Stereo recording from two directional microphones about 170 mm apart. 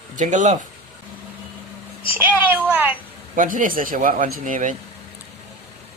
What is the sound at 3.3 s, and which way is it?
Speech, 50° right (ahead or behind).